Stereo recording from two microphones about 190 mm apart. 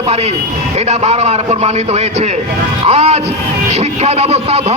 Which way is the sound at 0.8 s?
35° right (ahead or behind).